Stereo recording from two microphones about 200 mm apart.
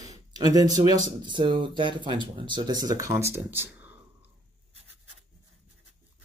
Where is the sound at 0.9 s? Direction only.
20° right (ahead or behind).